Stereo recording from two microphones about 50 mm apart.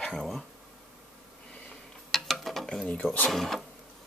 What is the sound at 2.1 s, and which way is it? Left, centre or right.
Mechanisms, centre.